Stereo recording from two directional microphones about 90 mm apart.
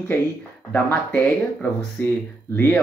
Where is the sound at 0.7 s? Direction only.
15° left (ahead or behind).